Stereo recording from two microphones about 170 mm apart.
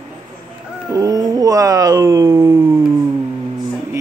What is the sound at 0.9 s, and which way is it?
Dog, 20° right (ahead or behind).